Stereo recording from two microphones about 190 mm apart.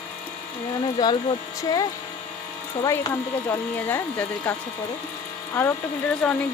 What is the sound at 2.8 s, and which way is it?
Speech, 15° left (ahead or behind).